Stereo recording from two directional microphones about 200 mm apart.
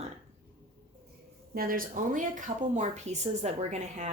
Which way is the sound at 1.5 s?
45° right (ahead or behind).